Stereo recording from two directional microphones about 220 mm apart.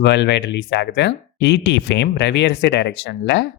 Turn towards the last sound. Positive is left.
turn(degrees=50)  # may be behind; listen again after turning